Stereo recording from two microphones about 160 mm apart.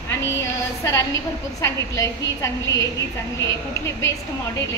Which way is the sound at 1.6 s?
20° left (ahead or behind).